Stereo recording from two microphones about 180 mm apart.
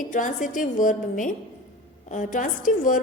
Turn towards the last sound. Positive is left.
turn(degrees=50)  # may be behind; listen again after turning